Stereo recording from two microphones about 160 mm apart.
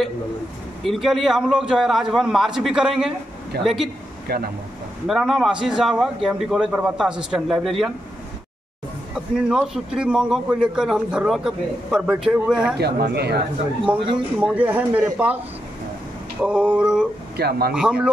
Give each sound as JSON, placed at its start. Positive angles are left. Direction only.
{"t": 0.8, "sound": "a man's voice", "side_deg": 0}
{"t": 4.3, "sound": "speech", "side_deg": -75}
{"t": 5.0, "sound": "a man's voice", "side_deg": 0}
{"t": 9.5, "sound": "a man's voice", "side_deg": -5}
{"t": 12.7, "sound": "speech", "side_deg": -90}
{"t": 14.1, "sound": "speech", "side_deg": -10}
{"t": 16.3, "sound": "speech", "side_deg": -10}
{"t": 17.4, "sound": "speech", "side_deg": -85}
{"t": 17.7, "sound": "speech", "side_deg": -5}